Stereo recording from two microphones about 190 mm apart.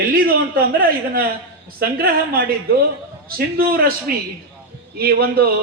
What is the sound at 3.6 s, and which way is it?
Speech, 50° right (ahead or behind).